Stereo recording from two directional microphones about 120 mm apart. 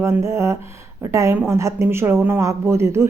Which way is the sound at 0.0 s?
20° right (ahead or behind).